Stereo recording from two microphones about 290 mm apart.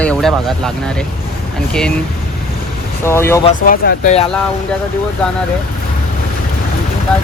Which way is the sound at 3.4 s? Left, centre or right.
Left.